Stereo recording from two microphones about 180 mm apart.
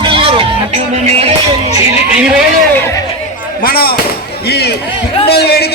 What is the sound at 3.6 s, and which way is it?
A man's voice, 55° left (ahead or behind).